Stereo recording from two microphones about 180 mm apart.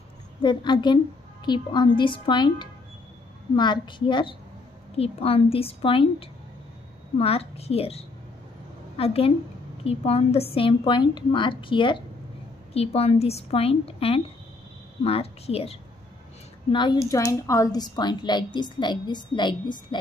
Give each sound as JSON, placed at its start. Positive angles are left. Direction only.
{"t": 0.4, "sound": "a woman's voice", "side_deg": 25}